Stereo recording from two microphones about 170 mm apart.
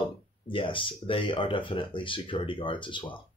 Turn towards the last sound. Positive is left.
turn(degrees=30)  # may be behind; listen again after turning